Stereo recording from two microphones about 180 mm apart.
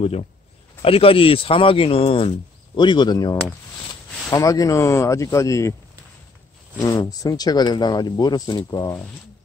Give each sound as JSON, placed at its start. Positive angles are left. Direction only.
{"t": 0.0, "sound": "speech", "side_deg": 35}
{"t": 6.8, "sound": "speech", "side_deg": 20}